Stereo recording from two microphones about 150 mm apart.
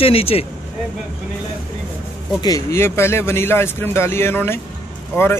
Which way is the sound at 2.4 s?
20° left (ahead or behind).